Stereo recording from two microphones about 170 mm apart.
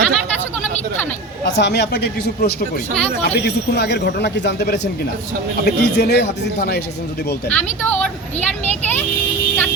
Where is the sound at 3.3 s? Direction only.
80° left.